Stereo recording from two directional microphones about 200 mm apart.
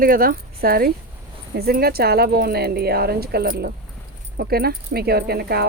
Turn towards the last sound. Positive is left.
turn(degrees=-50)  # may be behind; listen again after turning